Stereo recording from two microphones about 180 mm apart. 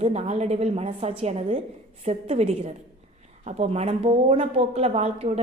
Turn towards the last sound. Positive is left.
turn(degrees=-35)  # may be behind; listen again after turning